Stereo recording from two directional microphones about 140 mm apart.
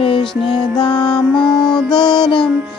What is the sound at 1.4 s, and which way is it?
Music, 5° left (ahead or behind).